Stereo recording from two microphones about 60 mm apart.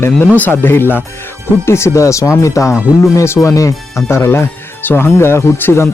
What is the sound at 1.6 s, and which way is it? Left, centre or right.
Speech, left.